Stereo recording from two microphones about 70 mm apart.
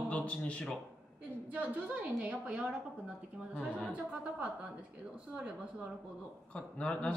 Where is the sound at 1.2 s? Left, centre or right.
Right.